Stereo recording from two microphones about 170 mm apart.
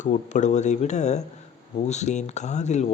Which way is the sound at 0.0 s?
45° left (ahead or behind).